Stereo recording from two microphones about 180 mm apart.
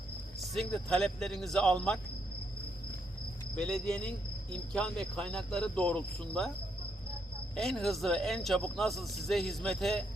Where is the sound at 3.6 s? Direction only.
5° left (ahead or behind).